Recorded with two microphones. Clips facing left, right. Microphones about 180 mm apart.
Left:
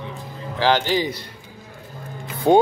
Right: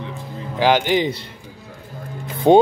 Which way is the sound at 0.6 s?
15° right (ahead or behind).